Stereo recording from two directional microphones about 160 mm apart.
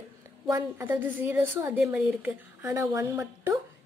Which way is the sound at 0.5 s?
20° right (ahead or behind).